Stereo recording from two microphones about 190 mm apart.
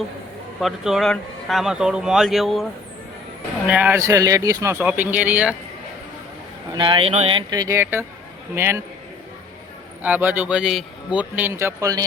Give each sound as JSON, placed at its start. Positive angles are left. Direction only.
{"t": 0.6, "sound": "speech", "side_deg": 0}
{"t": 3.7, "sound": "a man's voice", "side_deg": -10}
{"t": 6.7, "sound": "a man's voice", "side_deg": -25}
{"t": 10.0, "sound": "a man's voice", "side_deg": -10}